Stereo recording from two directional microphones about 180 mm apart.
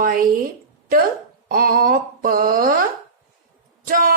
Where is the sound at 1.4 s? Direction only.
55° right (ahead or behind).